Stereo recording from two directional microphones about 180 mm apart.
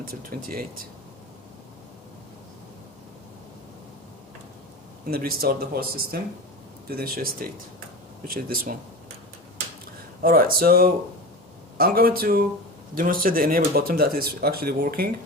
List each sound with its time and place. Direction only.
0.0 s speech: 50° right (ahead or behind)
5.0 s speech: 55° right (ahead or behind)
10.2 s speech: 55° right (ahead or behind)